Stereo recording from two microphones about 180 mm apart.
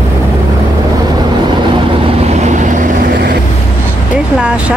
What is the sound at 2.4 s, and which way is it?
Vehicle, 45° right (ahead or behind).